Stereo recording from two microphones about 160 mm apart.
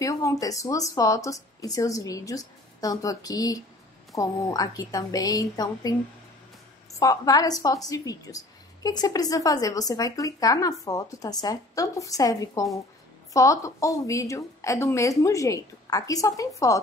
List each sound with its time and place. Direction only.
0.0 s a woman's voice: 20° left (ahead or behind)
7.0 s a woman's voice: 25° left (ahead or behind)